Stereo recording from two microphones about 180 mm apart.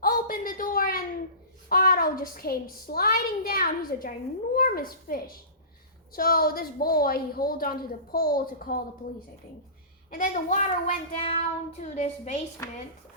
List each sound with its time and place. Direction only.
0.0 s a sound: 50° left (ahead or behind)
1.7 s a woman's voice: 55° left (ahead or behind)
10.1 s child singing: 50° left (ahead or behind)